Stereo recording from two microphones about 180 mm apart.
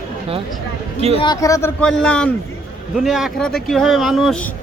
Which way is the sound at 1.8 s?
5° left (ahead or behind).